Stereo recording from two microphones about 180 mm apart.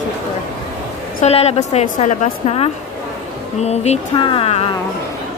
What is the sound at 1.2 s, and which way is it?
A woman's voice, 35° left (ahead or behind).